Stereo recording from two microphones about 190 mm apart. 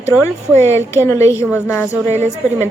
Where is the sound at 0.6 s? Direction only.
15° left (ahead or behind).